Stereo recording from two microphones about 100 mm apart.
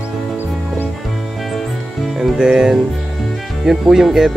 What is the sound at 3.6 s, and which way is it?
Speech, 5° right (ahead or behind).